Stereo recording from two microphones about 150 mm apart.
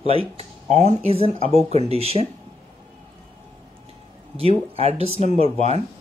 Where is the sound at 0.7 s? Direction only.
45° right (ahead or behind).